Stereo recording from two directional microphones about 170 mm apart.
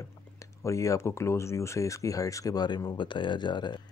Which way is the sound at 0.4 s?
20° left (ahead or behind).